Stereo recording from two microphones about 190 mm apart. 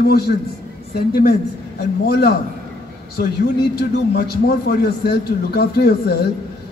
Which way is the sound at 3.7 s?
55° left (ahead or behind).